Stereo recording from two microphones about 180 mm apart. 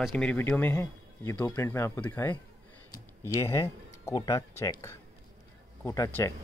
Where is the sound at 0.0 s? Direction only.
5° left (ahead or behind).